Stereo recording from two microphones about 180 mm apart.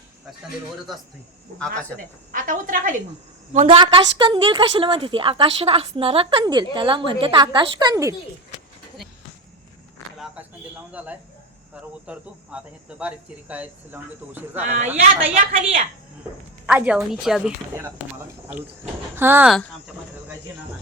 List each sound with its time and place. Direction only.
0.9 s a woman's voice: centre (ahead or behind)
2.0 s a woman's voice: 50° right (ahead or behind)
3.8 s a woman's voice: 25° right (ahead or behind)
10.9 s cricket: 10° right (ahead or behind)
15.0 s a woman's voice: 40° right (ahead or behind)
16.6 s a woman's voice: 5° right (ahead or behind)
19.1 s cricket: 10° right (ahead or behind)